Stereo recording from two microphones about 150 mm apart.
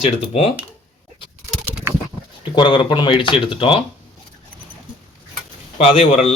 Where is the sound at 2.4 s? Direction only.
35° left (ahead or behind).